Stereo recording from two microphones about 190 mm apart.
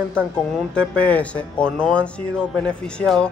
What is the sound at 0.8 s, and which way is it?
Speech, 5° left (ahead or behind).